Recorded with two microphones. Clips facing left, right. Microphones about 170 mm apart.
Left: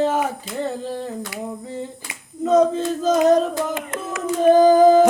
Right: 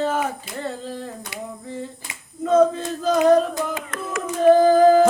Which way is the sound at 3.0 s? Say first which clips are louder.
Even; 20° left (ahead or behind).